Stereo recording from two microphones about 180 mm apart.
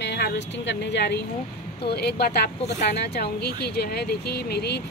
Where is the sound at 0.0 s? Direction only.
70° left (ahead or behind).